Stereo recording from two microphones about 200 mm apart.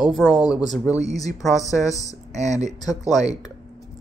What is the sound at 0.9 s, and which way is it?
Speech, 15° left (ahead or behind).